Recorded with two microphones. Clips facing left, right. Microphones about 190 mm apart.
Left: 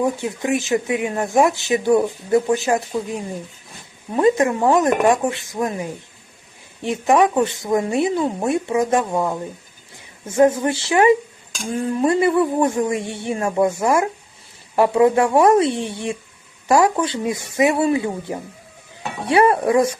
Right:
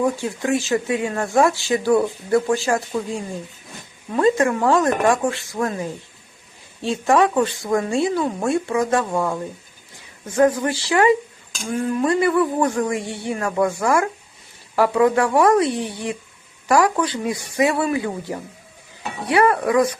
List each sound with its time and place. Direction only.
0.0 s speech: 20° left (ahead or behind)
6.8 s speech: 20° left (ahead or behind)